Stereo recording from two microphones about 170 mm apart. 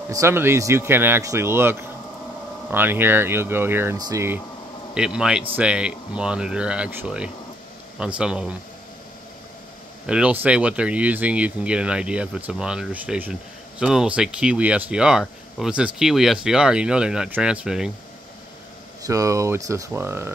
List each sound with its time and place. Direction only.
0.1 s speech: 15° right (ahead or behind)
4.9 s speech: 5° right (ahead or behind)
10.0 s speech: 5° right (ahead or behind)
19.0 s speech: 20° right (ahead or behind)